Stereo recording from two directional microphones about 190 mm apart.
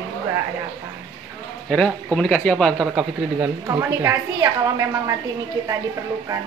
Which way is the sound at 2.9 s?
5° right (ahead or behind).